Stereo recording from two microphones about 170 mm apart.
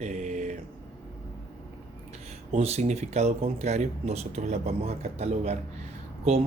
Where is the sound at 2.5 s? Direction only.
40° right (ahead or behind).